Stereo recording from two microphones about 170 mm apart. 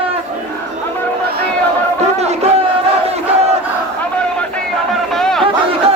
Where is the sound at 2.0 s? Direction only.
40° right (ahead or behind).